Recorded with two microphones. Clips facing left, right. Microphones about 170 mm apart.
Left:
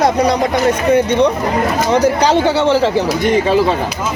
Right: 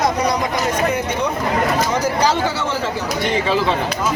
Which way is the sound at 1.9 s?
65° left (ahead or behind).